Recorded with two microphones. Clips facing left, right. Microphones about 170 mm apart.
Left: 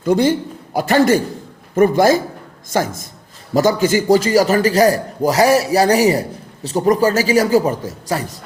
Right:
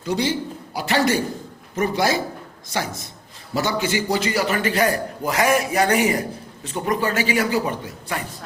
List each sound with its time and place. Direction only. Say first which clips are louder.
0.0 s a man's voice: left 8 dB; 50° left (ahead or behind)